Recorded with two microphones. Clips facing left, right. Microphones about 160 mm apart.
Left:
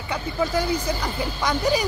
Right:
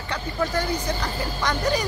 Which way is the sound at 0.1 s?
10° left (ahead or behind).